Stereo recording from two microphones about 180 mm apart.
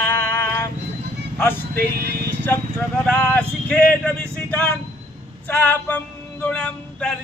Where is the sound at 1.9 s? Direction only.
60° right (ahead or behind).